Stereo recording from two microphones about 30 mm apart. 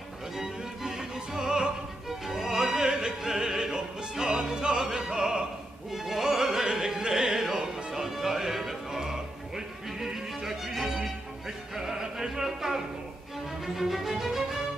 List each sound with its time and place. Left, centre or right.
0.4 s music: centre
1.1 s opera: right
2.0 s music: centre
2.4 s opera: centre
4.1 s music: right
4.6 s opera: right
5.9 s music: centre
6.7 s music: right